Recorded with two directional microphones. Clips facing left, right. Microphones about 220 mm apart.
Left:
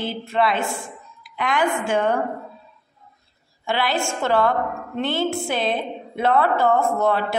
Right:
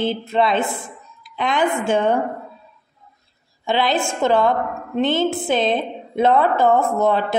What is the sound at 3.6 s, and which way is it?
A woman's voice, 20° right (ahead or behind).